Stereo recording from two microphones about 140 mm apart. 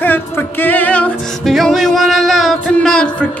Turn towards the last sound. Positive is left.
turn(degrees=5)  # may be behind; listen again after turning